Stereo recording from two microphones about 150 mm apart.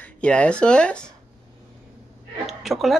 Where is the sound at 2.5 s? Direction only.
Centre (ahead or behind).